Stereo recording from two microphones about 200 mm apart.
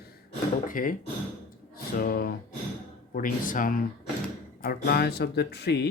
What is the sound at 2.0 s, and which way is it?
Speech, 50° left (ahead or behind).